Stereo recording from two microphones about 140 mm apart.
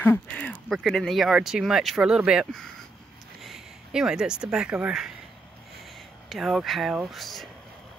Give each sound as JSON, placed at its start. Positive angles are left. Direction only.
{"t": 0.0, "sound": "a sound", "side_deg": 10}
{"t": 0.7, "sound": "speech", "side_deg": 0}
{"t": 6.2, "sound": "speech", "side_deg": 0}